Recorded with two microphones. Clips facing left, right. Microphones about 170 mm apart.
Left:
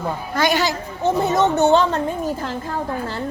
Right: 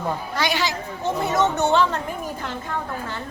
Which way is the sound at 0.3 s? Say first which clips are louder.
Left 6 dB; 45° left (ahead or behind).